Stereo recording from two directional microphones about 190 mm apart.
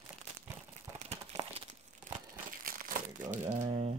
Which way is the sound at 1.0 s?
35° right (ahead or behind).